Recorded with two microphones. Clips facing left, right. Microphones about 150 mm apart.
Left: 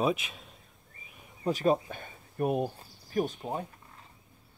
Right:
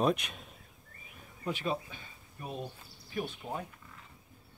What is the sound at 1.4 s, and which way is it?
Speech, 40° left (ahead or behind).